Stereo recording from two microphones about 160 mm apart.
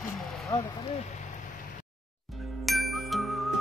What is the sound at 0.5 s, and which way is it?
Speech, 25° left (ahead or behind).